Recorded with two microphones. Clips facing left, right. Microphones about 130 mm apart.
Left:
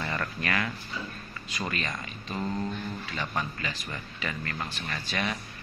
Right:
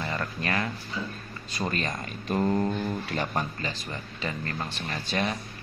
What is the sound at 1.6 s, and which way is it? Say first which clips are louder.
Speech: right 3 dB; 40° right (ahead or behind).